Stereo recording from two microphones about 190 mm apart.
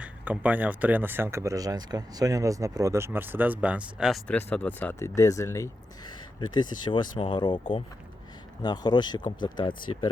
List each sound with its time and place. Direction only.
0.0 s speech: 5° right (ahead or behind)
4.4 s speech: 10° left (ahead or behind); by 10.1 s 25° left (ahead or behind)